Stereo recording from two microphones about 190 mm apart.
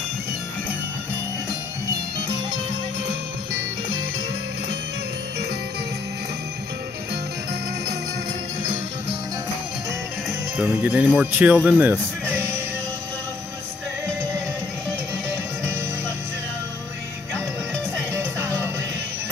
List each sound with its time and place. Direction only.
3.1 s music: 90° right
10.6 s speech: 5° right (ahead or behind)
11.8 s music: 10° right (ahead or behind)
18.1 s music: 10° right (ahead or behind)